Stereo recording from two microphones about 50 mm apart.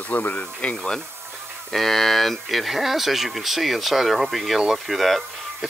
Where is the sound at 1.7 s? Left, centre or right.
Centre.